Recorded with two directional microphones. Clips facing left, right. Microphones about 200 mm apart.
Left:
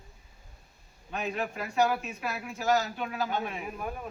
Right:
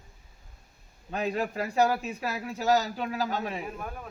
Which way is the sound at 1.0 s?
35° right (ahead or behind).